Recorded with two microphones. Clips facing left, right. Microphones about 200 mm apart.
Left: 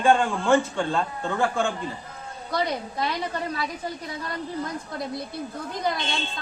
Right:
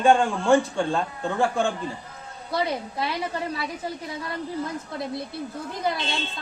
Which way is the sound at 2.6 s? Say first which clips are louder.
Even; 5° right (ahead or behind).